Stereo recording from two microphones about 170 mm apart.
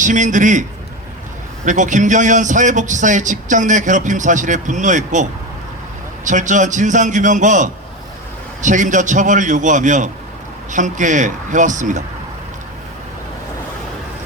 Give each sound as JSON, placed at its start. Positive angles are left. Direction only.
{"t": 0.0, "sound": "a man's voice", "side_deg": -50}
{"t": 1.6, "sound": "a man's voice", "side_deg": -45}
{"t": 6.2, "sound": "a man's voice", "side_deg": -50}